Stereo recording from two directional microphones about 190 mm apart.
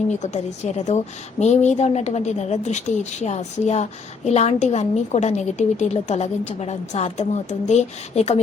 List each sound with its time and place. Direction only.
0.1 s a woman's voice: 40° left (ahead or behind)